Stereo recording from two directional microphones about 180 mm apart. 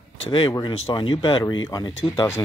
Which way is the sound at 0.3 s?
25° left (ahead or behind).